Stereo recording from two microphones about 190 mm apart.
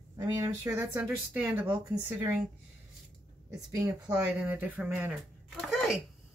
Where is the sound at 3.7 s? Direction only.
15° right (ahead or behind).